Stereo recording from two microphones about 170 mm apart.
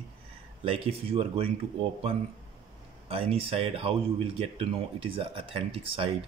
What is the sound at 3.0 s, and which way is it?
Speech, 35° right (ahead or behind).